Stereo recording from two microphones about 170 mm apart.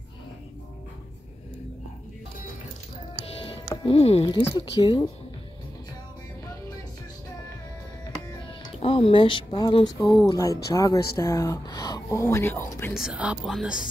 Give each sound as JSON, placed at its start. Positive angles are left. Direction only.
{"t": 3.3, "sound": "speech", "side_deg": 35}
{"t": 8.7, "sound": "speech", "side_deg": 35}
{"t": 10.2, "sound": "speech", "side_deg": 20}
{"t": 12.9, "sound": "speech", "side_deg": -5}